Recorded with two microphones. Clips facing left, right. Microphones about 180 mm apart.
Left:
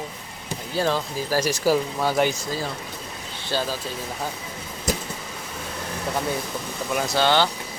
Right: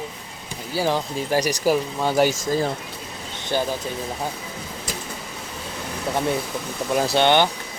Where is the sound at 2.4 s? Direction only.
50° right (ahead or behind).